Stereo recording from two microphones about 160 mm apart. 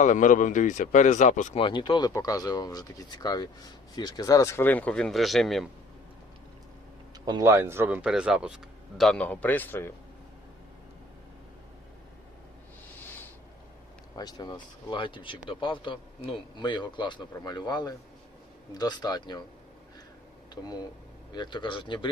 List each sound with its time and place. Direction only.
0.0 s speech: 55° left (ahead or behind)
1.5 s speech: 30° left (ahead or behind); by 5.6 s centre (ahead or behind)
7.3 s speech: 20° right (ahead or behind)
9.0 s speech: 5° left (ahead or behind)
14.2 s speech: 25° left (ahead or behind)
21.3 s speech: 30° left (ahead or behind)